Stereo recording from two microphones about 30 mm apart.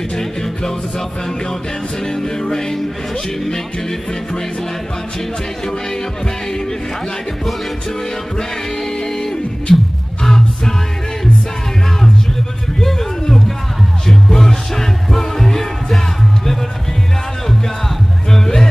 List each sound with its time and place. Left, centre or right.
0.1 s music: centre
2.0 s music: centre
9.7 s music: centre
14.0 s music: centre
18.3 s music: centre